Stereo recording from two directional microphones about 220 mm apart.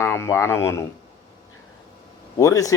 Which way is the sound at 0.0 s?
10° left (ahead or behind).